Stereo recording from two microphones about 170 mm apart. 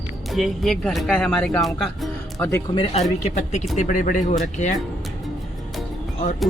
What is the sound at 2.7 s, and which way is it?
Speech, 35° left (ahead or behind).